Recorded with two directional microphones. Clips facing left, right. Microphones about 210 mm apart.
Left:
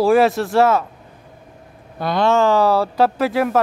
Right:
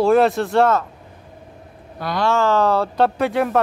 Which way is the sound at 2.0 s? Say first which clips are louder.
Left 3 dB; 25° left (ahead or behind).